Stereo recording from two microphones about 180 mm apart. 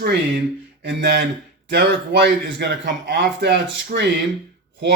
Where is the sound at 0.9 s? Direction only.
65° right (ahead or behind).